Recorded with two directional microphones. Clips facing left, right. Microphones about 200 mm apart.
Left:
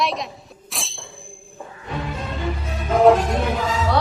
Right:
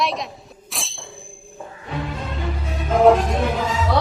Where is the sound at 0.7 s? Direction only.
Centre (ahead or behind).